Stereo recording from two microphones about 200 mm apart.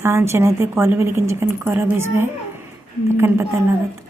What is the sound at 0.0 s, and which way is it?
A woman's voice, 10° right (ahead or behind).